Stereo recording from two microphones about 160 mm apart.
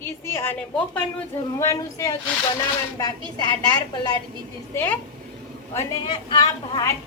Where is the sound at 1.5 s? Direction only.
20° left (ahead or behind).